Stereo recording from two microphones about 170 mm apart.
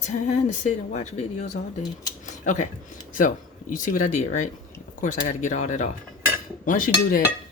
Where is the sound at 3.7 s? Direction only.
50° left (ahead or behind).